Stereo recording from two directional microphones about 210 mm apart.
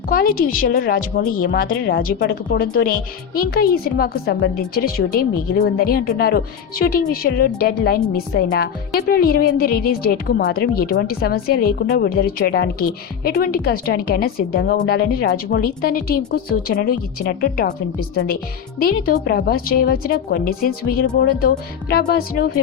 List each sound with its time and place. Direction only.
0.1 s a woman's voice: 45° left (ahead or behind)